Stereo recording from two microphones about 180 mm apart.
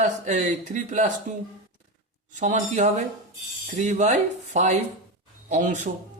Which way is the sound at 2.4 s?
45° right (ahead or behind).